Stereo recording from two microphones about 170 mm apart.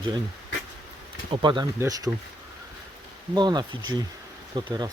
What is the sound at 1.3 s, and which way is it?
Speech, 30° right (ahead or behind).